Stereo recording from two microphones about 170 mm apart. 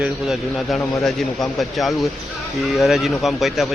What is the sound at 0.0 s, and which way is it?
A man's voice, centre (ahead or behind).